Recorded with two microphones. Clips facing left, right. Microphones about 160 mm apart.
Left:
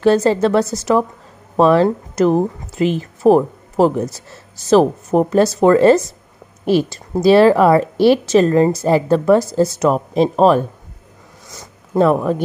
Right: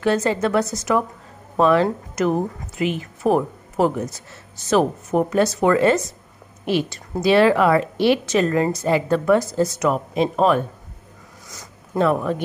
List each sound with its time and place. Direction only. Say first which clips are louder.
0.0 s speech: left 6 dB; 35° left (ahead or behind)
11.9 s speech: left 5 dB; 35° left (ahead or behind)